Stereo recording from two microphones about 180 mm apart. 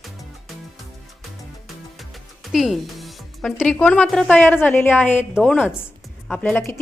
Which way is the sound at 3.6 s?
10° left (ahead or behind).